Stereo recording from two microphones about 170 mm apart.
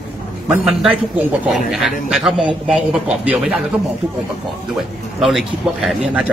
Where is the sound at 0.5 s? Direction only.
5° right (ahead or behind).